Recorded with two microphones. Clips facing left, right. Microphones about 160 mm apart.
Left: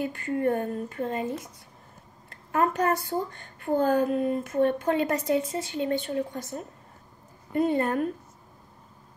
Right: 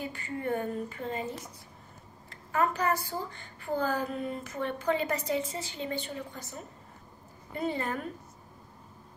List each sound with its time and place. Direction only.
0.4 s a woman's voice: 50° left (ahead or behind)
2.5 s a woman's voice: 50° left (ahead or behind)